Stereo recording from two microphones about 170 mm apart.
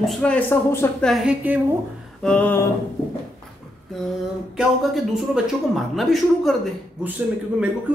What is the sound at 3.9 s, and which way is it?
Speech, centre (ahead or behind).